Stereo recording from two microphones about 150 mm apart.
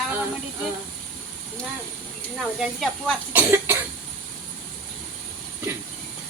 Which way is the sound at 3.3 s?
15° right (ahead or behind).